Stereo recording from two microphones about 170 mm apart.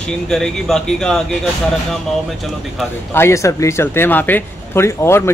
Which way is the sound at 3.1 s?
15° left (ahead or behind).